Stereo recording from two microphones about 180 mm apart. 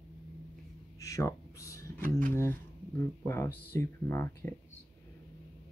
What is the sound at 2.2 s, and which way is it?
Speech, 15° left (ahead or behind).